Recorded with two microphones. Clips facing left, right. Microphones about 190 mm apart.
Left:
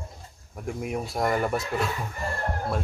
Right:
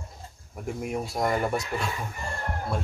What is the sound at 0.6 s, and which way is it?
A man's voice, centre (ahead or behind).